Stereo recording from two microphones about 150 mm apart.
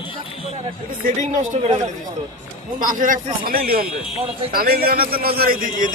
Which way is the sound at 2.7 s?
65° right (ahead or behind).